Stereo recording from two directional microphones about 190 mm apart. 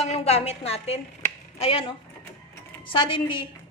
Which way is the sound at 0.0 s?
35° left (ahead or behind).